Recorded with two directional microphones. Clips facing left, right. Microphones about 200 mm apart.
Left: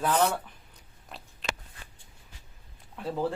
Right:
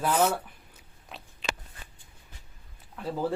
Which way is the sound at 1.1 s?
Centre (ahead or behind).